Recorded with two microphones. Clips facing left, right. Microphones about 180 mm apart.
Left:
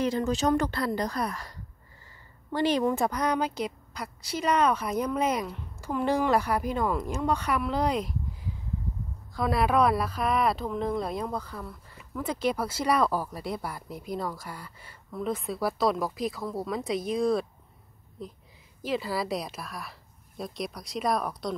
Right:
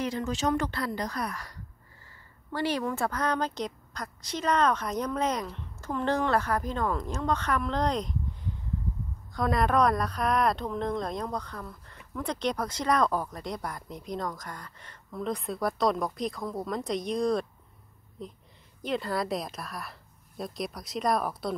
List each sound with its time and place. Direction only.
0.0 s a woman's voice: 35° left (ahead or behind); by 21.5 s centre (ahead or behind)